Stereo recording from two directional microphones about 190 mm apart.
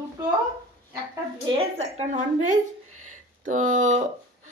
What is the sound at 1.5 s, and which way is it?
Speech, 35° right (ahead or behind).